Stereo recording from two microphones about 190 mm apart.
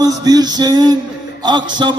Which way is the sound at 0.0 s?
20° right (ahead or behind).